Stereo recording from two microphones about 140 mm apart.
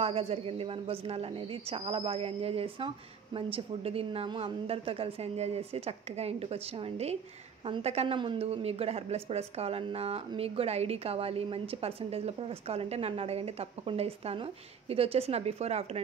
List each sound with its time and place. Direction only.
0.0 s speech: 45° right (ahead or behind)